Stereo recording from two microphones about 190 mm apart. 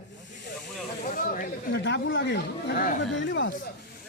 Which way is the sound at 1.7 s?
70° left (ahead or behind).